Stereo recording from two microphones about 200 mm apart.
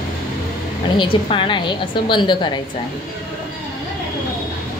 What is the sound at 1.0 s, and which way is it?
A woman's voice, 25° left (ahead or behind).